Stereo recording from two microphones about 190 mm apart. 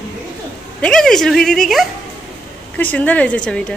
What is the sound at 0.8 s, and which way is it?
A woman's voice, 5° left (ahead or behind).